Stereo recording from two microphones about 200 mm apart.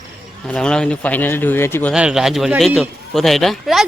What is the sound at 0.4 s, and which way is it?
Speech, 5° left (ahead or behind).